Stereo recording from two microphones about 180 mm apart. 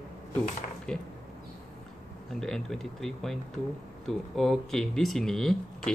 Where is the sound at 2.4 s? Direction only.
Centre (ahead or behind).